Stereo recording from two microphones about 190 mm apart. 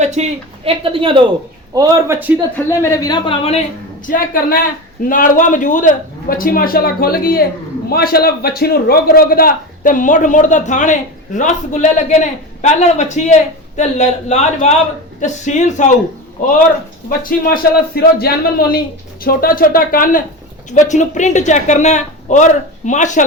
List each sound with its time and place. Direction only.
0.0 s speech: 35° right (ahead or behind)
1.7 s a man's voice: 15° right (ahead or behind)
2.6 s speech: 15° left (ahead or behind)
4.0 s a man's voice: 45° left (ahead or behind)
17.1 s a man's voice: 50° left (ahead or behind)